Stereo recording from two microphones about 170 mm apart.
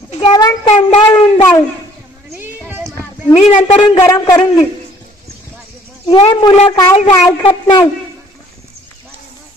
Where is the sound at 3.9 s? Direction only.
15° left (ahead or behind).